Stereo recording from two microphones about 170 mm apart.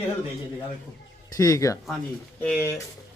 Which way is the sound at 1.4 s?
20° left (ahead or behind).